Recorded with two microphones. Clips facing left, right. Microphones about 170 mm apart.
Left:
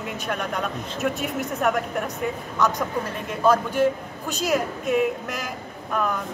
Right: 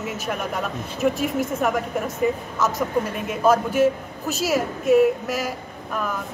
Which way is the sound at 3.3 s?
5° right (ahead or behind).